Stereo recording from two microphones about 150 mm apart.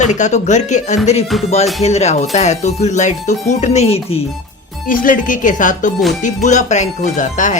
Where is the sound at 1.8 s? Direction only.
45° left (ahead or behind).